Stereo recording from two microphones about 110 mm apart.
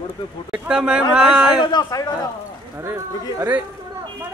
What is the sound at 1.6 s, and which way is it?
Speech, 40° left (ahead or behind).